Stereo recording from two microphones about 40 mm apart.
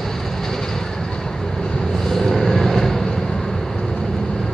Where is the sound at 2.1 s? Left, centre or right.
Centre.